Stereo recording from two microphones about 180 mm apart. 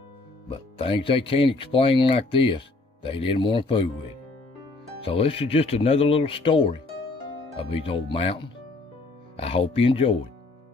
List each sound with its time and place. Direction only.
0.5 s speech: 30° left (ahead or behind)
5.0 s speech: 30° left (ahead or behind)